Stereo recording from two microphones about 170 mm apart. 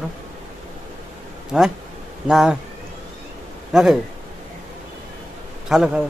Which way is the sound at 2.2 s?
5° right (ahead or behind).